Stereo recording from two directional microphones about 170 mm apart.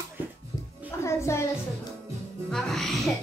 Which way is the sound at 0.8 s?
15° left (ahead or behind).